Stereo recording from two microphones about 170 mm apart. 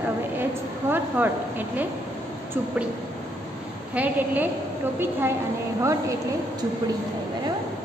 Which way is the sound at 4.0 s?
10° right (ahead or behind).